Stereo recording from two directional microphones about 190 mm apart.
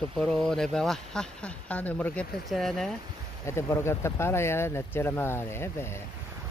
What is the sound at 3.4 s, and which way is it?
Speech, 15° left (ahead or behind).